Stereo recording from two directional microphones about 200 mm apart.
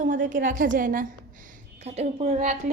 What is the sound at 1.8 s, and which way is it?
Speech, 35° right (ahead or behind).